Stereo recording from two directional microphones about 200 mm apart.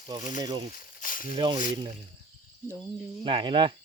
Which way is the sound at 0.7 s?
45° left (ahead or behind).